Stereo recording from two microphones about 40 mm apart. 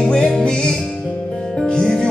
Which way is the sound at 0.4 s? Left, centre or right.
Left.